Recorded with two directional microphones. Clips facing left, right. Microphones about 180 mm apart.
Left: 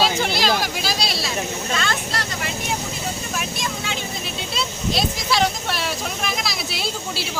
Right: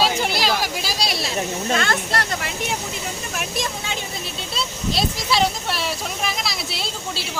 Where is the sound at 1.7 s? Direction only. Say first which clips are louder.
Right 4 dB; 55° right (ahead or behind).